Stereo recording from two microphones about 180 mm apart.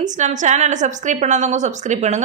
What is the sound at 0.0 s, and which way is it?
A woman's voice, 45° right (ahead or behind).